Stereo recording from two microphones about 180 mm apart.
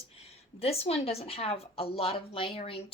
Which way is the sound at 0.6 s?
35° left (ahead or behind).